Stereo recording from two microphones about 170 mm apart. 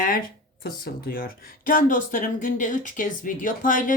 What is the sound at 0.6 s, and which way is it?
Speech, 60° left (ahead or behind).